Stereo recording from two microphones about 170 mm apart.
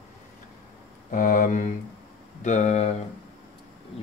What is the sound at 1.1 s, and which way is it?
Speech, 50° left (ahead or behind).